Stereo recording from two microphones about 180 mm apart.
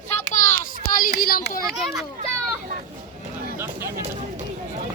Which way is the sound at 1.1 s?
55° left (ahead or behind).